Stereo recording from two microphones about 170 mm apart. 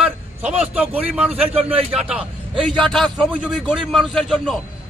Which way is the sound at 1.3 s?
35° right (ahead or behind).